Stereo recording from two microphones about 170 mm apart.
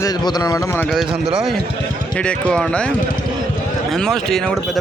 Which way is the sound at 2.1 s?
5° left (ahead or behind).